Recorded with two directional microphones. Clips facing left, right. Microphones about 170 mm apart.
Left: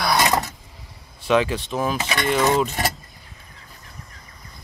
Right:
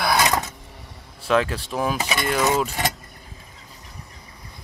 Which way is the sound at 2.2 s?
Centre (ahead or behind).